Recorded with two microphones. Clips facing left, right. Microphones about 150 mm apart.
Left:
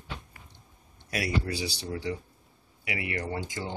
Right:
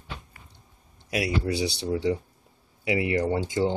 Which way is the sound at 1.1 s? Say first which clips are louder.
Right 4 dB; 20° right (ahead or behind).